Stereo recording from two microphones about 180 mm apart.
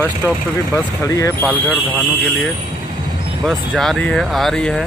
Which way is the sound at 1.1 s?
15° left (ahead or behind).